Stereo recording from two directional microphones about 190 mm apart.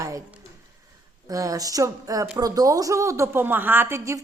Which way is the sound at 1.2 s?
20° right (ahead or behind).